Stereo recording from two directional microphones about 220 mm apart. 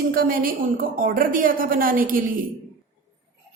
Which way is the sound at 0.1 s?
40° right (ahead or behind).